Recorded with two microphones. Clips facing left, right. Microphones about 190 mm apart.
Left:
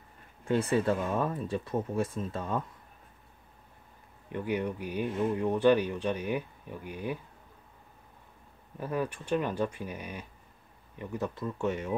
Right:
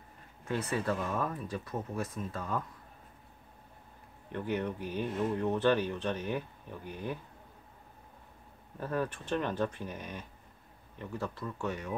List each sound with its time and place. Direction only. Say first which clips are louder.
0.5 s speech: left 6 dB; 30° left (ahead or behind)
4.3 s speech: left 2 dB; 10° left (ahead or behind)
8.7 s speech: left 1 dB; 10° left (ahead or behind)